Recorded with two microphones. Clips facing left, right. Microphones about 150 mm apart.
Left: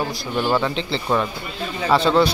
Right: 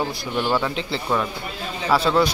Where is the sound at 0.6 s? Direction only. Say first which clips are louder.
Left 2 dB; 5° right (ahead or behind).